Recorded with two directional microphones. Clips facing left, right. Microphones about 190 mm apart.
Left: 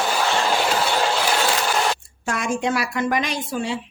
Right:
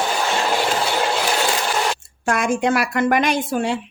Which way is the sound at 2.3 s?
55° right (ahead or behind).